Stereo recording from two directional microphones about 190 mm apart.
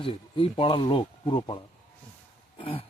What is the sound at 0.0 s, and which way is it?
Speech, 25° left (ahead or behind).